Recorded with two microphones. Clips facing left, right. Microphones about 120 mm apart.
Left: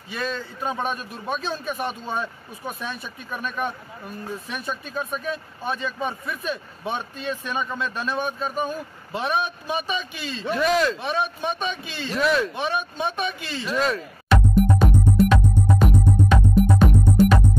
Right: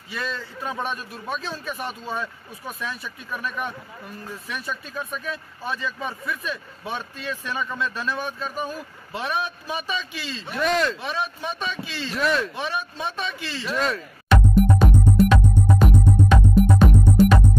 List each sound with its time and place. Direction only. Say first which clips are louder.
0.1 s a man's voice: left 2 dB; 25° left (ahead or behind)
10.5 s speech: left 2 dB; centre (ahead or behind)
11.0 s a man's voice: left 3 dB; 20° left (ahead or behind)
12.2 s speech: left 2 dB; centre (ahead or behind)
12.5 s a man's voice: left 3 dB; 20° left (ahead or behind)
13.7 s music: left 2 dB; centre (ahead or behind)